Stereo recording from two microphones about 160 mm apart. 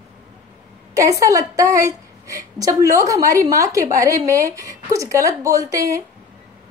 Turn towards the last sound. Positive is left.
turn(degrees=-20)  # may be behind; listen again after turning